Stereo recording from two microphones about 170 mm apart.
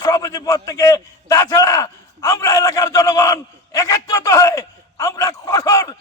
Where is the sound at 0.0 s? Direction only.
20° left (ahead or behind).